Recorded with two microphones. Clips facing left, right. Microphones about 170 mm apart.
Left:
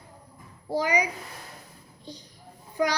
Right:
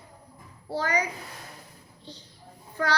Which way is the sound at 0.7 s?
15° left (ahead or behind).